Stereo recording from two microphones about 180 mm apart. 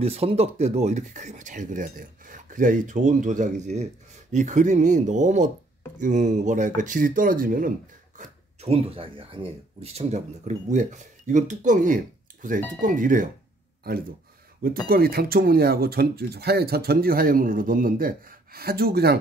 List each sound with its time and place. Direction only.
0.0 s speech: 35° right (ahead or behind); by 7.7 s 50° right (ahead or behind)
8.2 s speech: 35° right (ahead or behind)
14.9 s speech: 55° right (ahead or behind)